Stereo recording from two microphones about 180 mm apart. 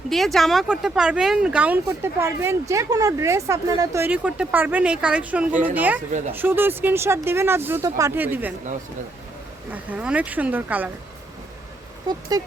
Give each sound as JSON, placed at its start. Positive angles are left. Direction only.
{"t": 0.1, "sound": "speech", "side_deg": 0}
{"t": 9.7, "sound": "speech", "side_deg": -10}
{"t": 12.3, "sound": "speech", "side_deg": -20}